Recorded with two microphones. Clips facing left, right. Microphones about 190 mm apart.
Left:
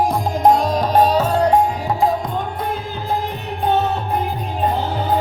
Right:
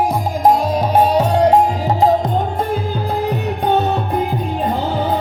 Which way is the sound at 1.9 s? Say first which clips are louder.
Right 4 dB; 40° right (ahead or behind).